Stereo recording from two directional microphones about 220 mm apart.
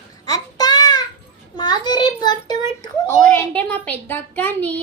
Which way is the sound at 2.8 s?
10° left (ahead or behind).